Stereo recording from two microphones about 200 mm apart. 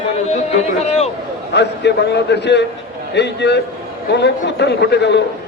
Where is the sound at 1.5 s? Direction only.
60° left (ahead or behind).